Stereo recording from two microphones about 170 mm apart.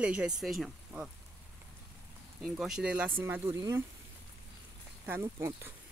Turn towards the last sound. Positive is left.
turn(degrees=-15)  # may be behind; listen again after turning